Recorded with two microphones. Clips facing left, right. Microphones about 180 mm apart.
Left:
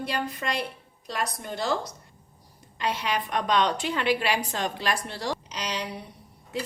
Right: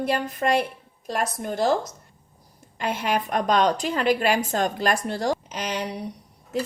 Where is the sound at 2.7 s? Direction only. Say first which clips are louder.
Right 3 dB; 50° right (ahead or behind).